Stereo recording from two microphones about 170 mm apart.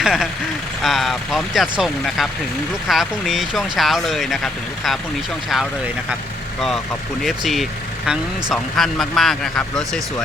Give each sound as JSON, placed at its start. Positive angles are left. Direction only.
{"t": 0.0, "sound": "speech", "side_deg": -5}
{"t": 7.2, "sound": "speech", "side_deg": 0}